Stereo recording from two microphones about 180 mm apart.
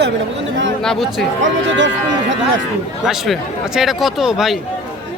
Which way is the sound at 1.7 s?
90° right.